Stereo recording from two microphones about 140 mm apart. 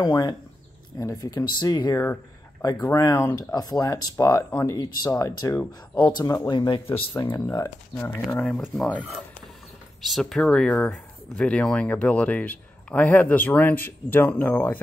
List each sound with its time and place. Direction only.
0.0 s speech: 30° left (ahead or behind)
6.5 s speech: 35° left (ahead or behind)
7.3 s speech: 20° left (ahead or behind)
8.5 s speech: 5° left (ahead or behind)